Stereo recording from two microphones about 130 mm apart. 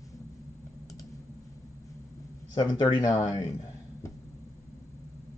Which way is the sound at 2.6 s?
35° left (ahead or behind).